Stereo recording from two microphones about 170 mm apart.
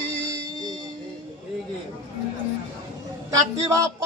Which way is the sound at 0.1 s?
35° left (ahead or behind).